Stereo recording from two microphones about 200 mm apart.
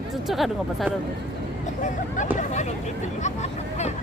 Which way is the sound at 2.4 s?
35° left (ahead or behind).